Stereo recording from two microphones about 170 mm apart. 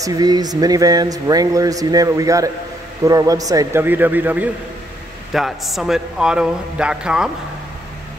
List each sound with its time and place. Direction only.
0.0 s a man's voice: 20° right (ahead or behind); by 7.2 s 5° right (ahead or behind)